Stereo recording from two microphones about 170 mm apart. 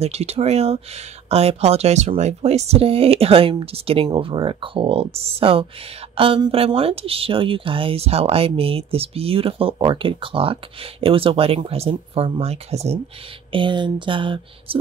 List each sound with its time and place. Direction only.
0.0 s speech: 40° right (ahead or behind)